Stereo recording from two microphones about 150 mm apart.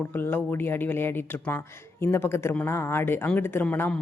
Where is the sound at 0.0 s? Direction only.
15° left (ahead or behind).